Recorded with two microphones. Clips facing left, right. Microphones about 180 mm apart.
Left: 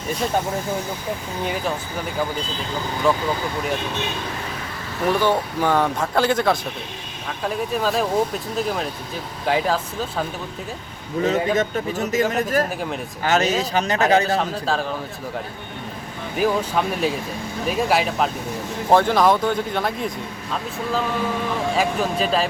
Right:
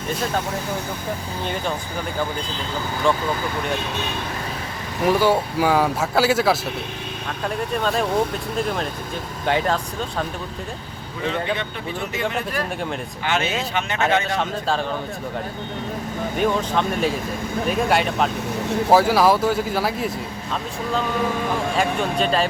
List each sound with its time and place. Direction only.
3.1 s speech: 5° left (ahead or behind)
5.0 s speech: 10° right (ahead or behind)
11.2 s speech: 40° left (ahead or behind)
14.3 s speech: centre (ahead or behind)
16.4 s speech: 5° left (ahead or behind)